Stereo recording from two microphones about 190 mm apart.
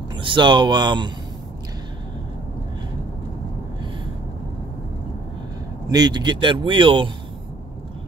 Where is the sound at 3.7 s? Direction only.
25° right (ahead or behind).